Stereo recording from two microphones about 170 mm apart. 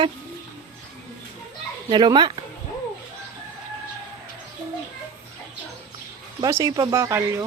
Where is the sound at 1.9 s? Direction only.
25° right (ahead or behind).